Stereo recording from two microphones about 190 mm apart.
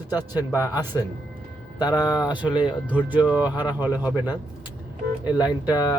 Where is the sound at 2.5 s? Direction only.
25° left (ahead or behind).